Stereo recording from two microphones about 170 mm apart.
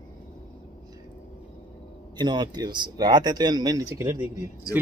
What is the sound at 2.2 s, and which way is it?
Speech, 25° right (ahead or behind).